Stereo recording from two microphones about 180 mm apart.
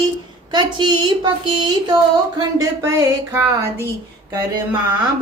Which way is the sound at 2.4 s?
20° right (ahead or behind).